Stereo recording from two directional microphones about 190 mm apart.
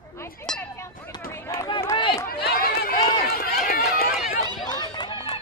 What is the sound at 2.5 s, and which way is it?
Run, 50° left (ahead or behind).